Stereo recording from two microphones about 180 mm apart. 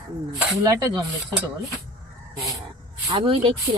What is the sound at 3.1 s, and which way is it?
Speech, 25° right (ahead or behind).